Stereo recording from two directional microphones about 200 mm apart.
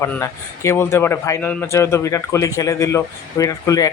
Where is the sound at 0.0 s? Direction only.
15° left (ahead or behind).